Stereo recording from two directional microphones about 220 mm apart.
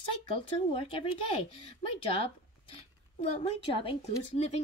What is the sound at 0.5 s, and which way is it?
Speech, 25° left (ahead or behind).